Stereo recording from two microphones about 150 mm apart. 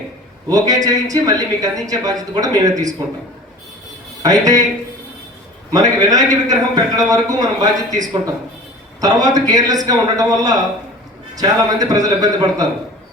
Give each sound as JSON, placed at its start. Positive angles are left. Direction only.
{"t": 0.4, "sound": "speech", "side_deg": -25}
{"t": 4.2, "sound": "speech", "side_deg": -25}
{"t": 5.7, "sound": "speech", "side_deg": -25}
{"t": 9.0, "sound": "speech", "side_deg": -25}